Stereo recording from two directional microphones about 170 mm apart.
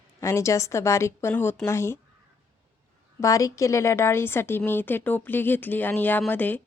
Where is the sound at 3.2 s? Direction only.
20° left (ahead or behind).